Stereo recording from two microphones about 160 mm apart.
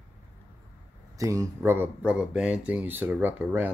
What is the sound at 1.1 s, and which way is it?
Speech, 20° right (ahead or behind).